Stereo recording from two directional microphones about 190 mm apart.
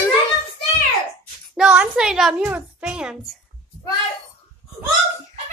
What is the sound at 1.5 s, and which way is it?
A woman's voice, 5° right (ahead or behind).